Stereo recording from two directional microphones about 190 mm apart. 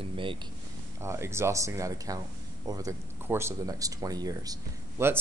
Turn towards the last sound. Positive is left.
turn(degrees=-15)  # may be behind; listen again after turning